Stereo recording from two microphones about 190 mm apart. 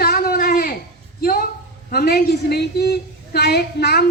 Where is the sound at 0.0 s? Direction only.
50° left (ahead or behind).